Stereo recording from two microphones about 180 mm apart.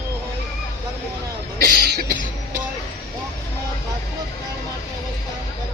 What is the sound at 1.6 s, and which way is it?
Cough, 60° right (ahead or behind).